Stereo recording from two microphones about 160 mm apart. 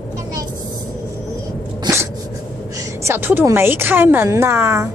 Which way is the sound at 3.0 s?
15° right (ahead or behind).